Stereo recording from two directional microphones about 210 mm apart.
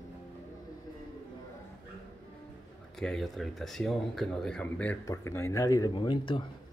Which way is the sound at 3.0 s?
Centre (ahead or behind).